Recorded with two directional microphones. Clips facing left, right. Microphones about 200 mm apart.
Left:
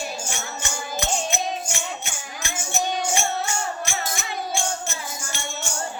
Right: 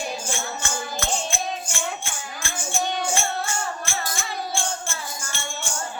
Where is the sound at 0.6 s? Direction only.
15° left (ahead or behind).